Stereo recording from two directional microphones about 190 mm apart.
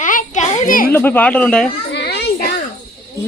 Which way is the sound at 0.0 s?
45° left (ahead or behind).